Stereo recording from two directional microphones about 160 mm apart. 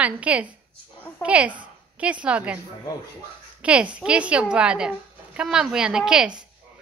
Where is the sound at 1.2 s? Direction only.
5° right (ahead or behind).